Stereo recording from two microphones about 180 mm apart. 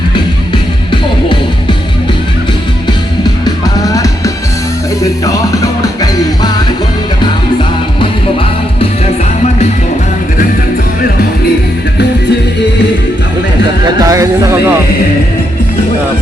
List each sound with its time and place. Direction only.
0.5 s music: 25° left (ahead or behind)
3.4 s music: 20° left (ahead or behind)
14.0 s speech: 20° right (ahead or behind)